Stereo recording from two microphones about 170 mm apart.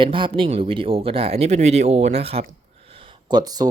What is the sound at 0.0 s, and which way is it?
Speech, 30° right (ahead or behind).